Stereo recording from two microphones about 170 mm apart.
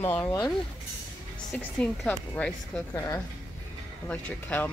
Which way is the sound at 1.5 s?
5° left (ahead or behind).